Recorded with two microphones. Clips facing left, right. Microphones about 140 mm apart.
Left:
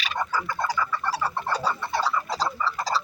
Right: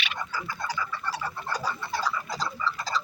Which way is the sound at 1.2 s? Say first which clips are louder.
Left 5 dB; 75° left (ahead or behind).